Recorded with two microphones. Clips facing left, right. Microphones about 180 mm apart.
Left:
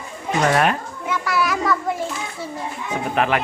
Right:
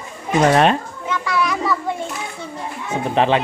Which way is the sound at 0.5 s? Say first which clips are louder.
Right 4 dB; 25° right (ahead or behind).